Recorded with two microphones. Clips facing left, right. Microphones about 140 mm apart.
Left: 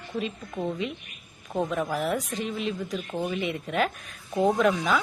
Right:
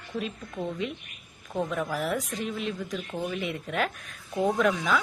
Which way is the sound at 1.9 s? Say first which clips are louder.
Left 2 dB; centre (ahead or behind).